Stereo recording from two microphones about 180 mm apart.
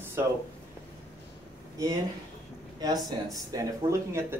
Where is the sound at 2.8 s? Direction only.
20° right (ahead or behind).